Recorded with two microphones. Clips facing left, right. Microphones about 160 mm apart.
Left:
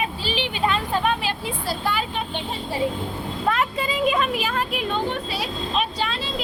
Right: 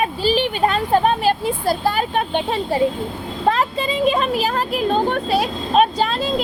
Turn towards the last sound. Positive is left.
turn(degrees=-45)  # may be behind; listen again after turning